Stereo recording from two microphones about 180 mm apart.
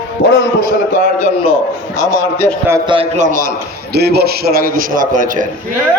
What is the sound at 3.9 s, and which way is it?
A man's voice, 60° right (ahead or behind).